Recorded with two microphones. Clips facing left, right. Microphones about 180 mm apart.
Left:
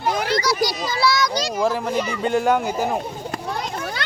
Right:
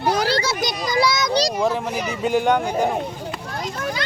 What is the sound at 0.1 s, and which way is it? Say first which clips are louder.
Children playing: even; 35° right (ahead or behind).